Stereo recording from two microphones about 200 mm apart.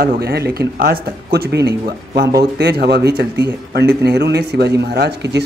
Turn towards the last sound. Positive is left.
turn(degrees=-60)  # may be behind; listen again after turning